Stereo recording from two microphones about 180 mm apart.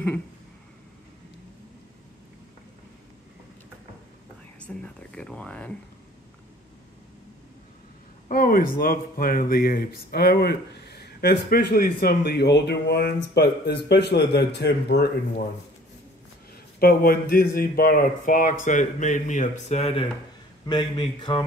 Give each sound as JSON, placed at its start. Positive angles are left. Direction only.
{"t": 4.6, "sound": "speech", "side_deg": 5}
{"t": 8.3, "sound": "speech", "side_deg": 50}
{"t": 16.8, "sound": "speech", "side_deg": 55}